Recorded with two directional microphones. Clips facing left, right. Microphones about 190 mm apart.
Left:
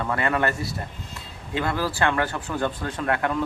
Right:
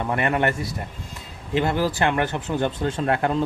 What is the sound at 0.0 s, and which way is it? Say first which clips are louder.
Speech: right 2 dB; 20° right (ahead or behind).